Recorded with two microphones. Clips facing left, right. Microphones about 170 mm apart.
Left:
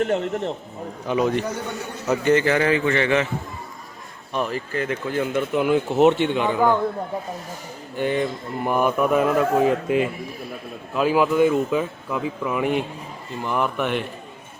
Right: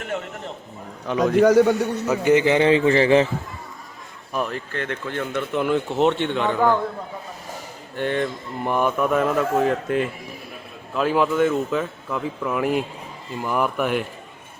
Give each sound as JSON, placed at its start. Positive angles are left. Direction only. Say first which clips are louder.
{"t": 0.0, "sound": "speech", "louder": "left 8 dB", "side_deg": 35}
{"t": 1.0, "sound": "speech", "louder": "even", "side_deg": 5}
{"t": 1.3, "sound": "a man's voice", "louder": "right 11 dB", "side_deg": -90}
{"t": 2.0, "sound": "a man's voice", "louder": "even", "side_deg": -15}
{"t": 4.4, "sound": "speech", "louder": "left 2 dB", "side_deg": 5}
{"t": 7.9, "sound": "speech", "louder": "left 1 dB", "side_deg": 5}